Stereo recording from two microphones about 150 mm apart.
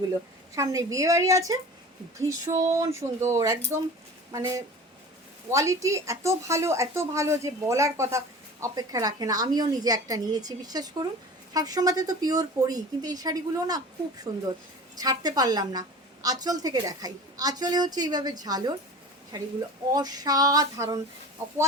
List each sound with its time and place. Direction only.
0.5 s a woman's voice: 20° right (ahead or behind)